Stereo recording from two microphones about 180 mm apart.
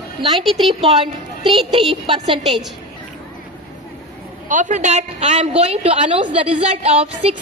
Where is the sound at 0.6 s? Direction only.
30° right (ahead or behind).